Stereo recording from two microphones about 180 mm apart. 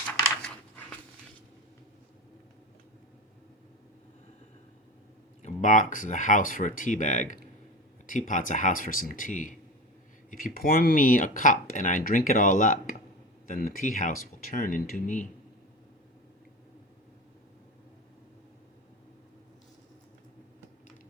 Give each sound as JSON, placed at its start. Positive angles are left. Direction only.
{"t": 5.4, "sound": "speech", "side_deg": 40}